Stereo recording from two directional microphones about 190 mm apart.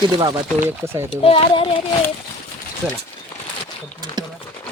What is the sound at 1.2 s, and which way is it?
Speech, 25° left (ahead or behind).